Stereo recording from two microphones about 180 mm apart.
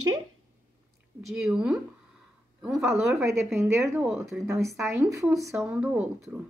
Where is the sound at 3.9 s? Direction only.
15° right (ahead or behind).